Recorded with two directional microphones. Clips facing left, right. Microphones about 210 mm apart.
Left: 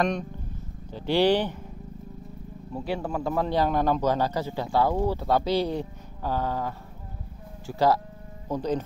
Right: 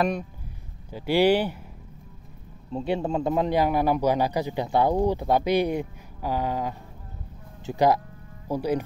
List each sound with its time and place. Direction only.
0.9 s a man's voice: 10° right (ahead or behind)
2.7 s a man's voice: 25° right (ahead or behind)